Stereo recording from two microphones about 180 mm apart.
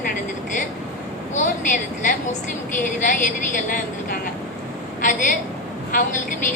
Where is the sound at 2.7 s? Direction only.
45° left (ahead or behind).